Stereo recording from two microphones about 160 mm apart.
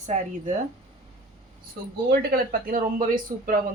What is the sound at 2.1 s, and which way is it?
Speech, 65° right (ahead or behind).